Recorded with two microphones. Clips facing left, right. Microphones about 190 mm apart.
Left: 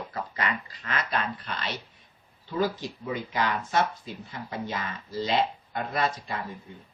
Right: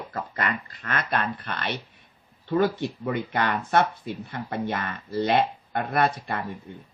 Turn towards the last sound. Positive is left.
turn(degrees=-60)  # may be behind; listen again after turning